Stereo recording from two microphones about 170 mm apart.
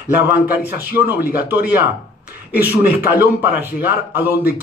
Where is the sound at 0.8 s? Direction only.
10° right (ahead or behind).